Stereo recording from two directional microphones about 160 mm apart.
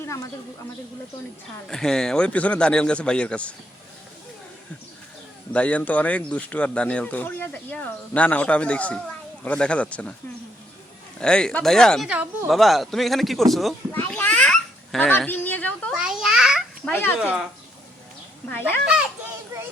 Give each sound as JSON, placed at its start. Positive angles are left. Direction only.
{"t": 0.0, "sound": "speech", "side_deg": 20}
{"t": 1.6, "sound": "a man's voice", "side_deg": 5}
{"t": 5.5, "sound": "a man's voice", "side_deg": 10}
{"t": 11.2, "sound": "a man's voice", "side_deg": 5}
{"t": 13.9, "sound": "a sound", "side_deg": 10}
{"t": 15.9, "sound": "babbling", "side_deg": -5}
{"t": 16.9, "sound": "a man's voice", "side_deg": 15}
{"t": 18.4, "sound": "a man's voice", "side_deg": 15}